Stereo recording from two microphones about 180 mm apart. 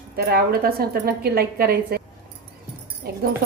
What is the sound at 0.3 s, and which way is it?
Speech, 55° right (ahead or behind).